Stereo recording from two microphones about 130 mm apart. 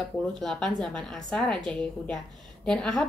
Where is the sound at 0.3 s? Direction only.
5° left (ahead or behind).